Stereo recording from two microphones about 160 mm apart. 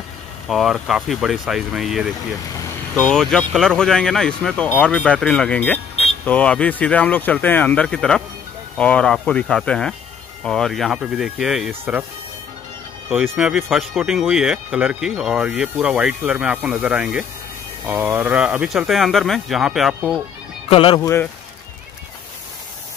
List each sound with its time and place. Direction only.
0.5 s speech: centre (ahead or behind)
13.4 s speech: centre (ahead or behind)
20.7 s speech: 35° left (ahead or behind)
21.0 s speech: 15° left (ahead or behind)